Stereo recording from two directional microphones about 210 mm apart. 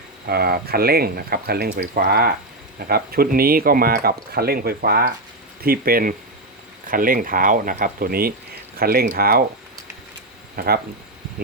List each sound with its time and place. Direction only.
0.3 s speech: 45° right (ahead or behind)
10.5 s speech: 45° right (ahead or behind)